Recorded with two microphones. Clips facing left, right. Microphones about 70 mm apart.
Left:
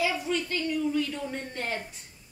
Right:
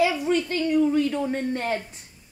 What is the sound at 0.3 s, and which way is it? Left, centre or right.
A woman's voice, right.